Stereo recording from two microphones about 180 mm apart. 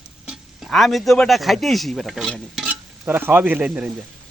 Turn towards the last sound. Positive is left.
turn(degrees=-5)  # may be behind; listen again after turning